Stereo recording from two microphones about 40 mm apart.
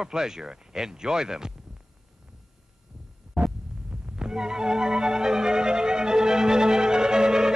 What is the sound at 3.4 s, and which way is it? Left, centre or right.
Hum, right.